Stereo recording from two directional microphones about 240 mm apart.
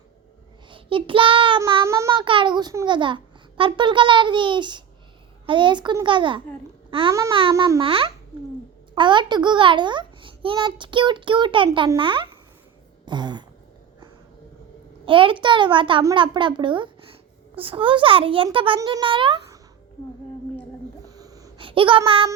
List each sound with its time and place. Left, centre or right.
0.7 s a child's voice: right
13.1 s throat clearing: centre
15.0 s a child's voice: right
21.0 s a sound: centre